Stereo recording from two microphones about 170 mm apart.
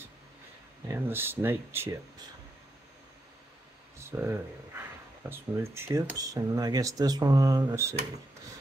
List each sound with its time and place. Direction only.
0.8 s speech: 15° right (ahead or behind)
4.0 s speech: 15° right (ahead or behind)